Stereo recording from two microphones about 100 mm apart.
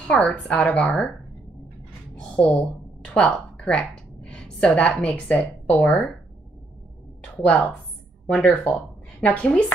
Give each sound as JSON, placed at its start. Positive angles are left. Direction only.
{"t": 0.0, "sound": "a woman's voice", "side_deg": 10}
{"t": 2.3, "sound": "a woman's voice", "side_deg": 10}
{"t": 7.4, "sound": "a woman's voice", "side_deg": 10}
{"t": 9.2, "sound": "a woman's voice", "side_deg": 15}